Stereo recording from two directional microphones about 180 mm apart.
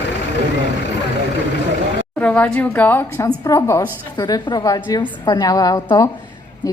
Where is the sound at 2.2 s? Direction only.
5° left (ahead or behind).